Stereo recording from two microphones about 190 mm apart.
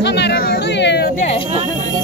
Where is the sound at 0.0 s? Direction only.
65° left (ahead or behind).